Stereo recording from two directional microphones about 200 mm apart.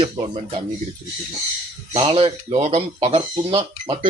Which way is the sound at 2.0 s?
25° right (ahead or behind).